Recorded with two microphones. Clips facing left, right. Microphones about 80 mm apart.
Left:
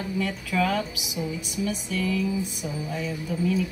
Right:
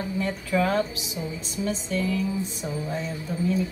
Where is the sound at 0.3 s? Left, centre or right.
Right.